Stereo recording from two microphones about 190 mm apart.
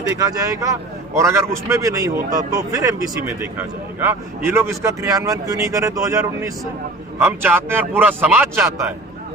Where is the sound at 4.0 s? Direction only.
15° right (ahead or behind).